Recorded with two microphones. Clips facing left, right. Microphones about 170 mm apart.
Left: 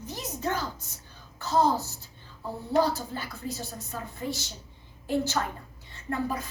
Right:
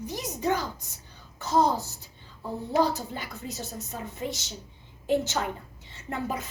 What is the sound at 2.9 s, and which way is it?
A woman's voice, 20° right (ahead or behind).